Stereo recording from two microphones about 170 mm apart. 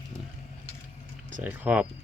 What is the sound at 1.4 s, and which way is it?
Speech, 10° right (ahead or behind).